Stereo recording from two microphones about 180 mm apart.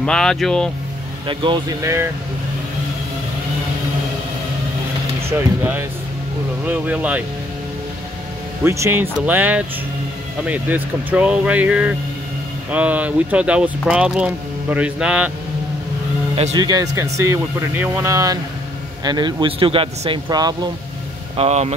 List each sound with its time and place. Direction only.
0.0 s speech: 5° left (ahead or behind)
1.2 s a man's voice: 25° right (ahead or behind)
5.6 s speech: 10° right (ahead or behind)
8.6 s speech: 15° right (ahead or behind)
16.5 s a man's voice: 20° right (ahead or behind)
21.4 s speech: 35° right (ahead or behind)